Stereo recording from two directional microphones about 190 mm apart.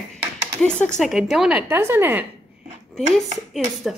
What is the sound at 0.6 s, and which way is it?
Speech, 5° left (ahead or behind).